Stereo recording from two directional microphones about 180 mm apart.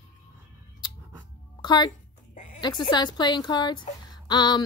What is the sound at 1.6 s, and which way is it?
Speech, 25° left (ahead or behind).